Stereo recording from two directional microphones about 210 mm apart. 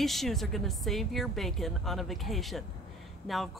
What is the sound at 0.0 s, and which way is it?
Speech, centre (ahead or behind).